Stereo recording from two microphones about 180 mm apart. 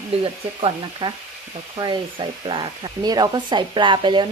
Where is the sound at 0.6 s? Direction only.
30° right (ahead or behind).